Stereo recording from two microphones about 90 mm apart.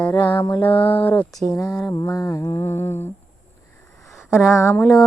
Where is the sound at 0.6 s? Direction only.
20° left (ahead or behind).